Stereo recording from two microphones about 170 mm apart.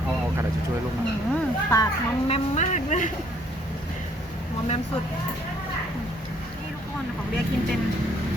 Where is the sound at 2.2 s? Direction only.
40° left (ahead or behind).